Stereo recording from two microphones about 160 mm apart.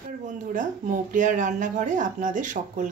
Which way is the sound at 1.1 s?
55° right (ahead or behind).